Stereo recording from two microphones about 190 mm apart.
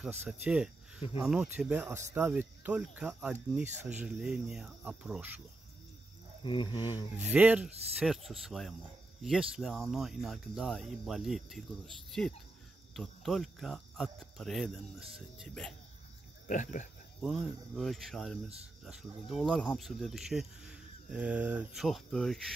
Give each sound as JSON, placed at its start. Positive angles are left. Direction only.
{"t": 0.2, "sound": "speech", "side_deg": -5}
{"t": 6.4, "sound": "speech", "side_deg": 25}
{"t": 7.2, "sound": "speech", "side_deg": -5}
{"t": 16.4, "sound": "speech", "side_deg": 40}
{"t": 17.2, "sound": "speech", "side_deg": 0}